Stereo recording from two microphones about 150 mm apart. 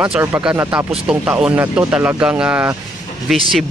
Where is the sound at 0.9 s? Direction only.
5° right (ahead or behind).